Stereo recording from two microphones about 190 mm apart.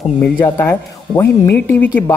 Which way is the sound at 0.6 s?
15° left (ahead or behind).